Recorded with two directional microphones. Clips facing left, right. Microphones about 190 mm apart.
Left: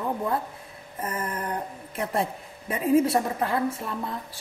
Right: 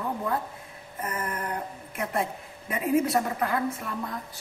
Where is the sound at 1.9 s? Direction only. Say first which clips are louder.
Left 2 dB; 30° left (ahead or behind).